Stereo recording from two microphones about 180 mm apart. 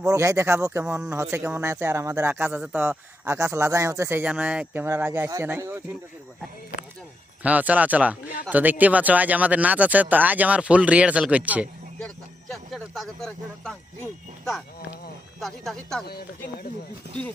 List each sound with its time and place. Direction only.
0.0 s speech: 20° right (ahead or behind)
7.4 s speech: 10° right (ahead or behind)
11.9 s a sound: centre (ahead or behind)
15.4 s speech: centre (ahead or behind)
16.0 s speech: 60° left (ahead or behind)